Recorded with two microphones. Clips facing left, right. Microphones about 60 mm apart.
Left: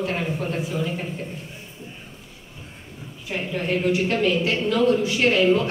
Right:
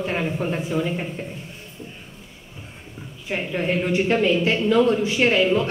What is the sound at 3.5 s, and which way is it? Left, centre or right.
A woman's voice, right.